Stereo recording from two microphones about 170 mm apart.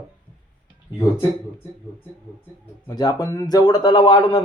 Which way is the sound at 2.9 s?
25° left (ahead or behind).